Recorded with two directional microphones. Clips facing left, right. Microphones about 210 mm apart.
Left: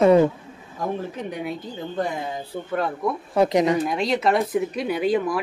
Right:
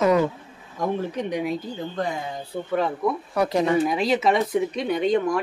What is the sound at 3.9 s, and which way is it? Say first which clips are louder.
Speech: even; centre (ahead or behind).